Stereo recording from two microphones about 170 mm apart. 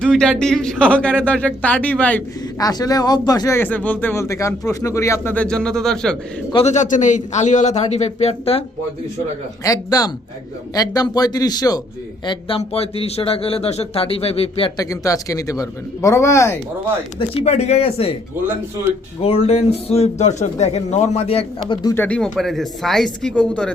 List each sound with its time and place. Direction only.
0.0 s speech: 5° left (ahead or behind)
2.6 s speech: 20° left (ahead or behind); by 6.1 s 5° left (ahead or behind)
6.5 s speech: 35° left (ahead or behind)
9.6 s speech: 20° left (ahead or behind)
14.8 s speech: 20° left (ahead or behind)
17.2 s speech: 35° left (ahead or behind)
19.2 s speech: 35° left (ahead or behind)
21.7 s speech: 25° left (ahead or behind)
21.9 s speech: 10° left (ahead or behind)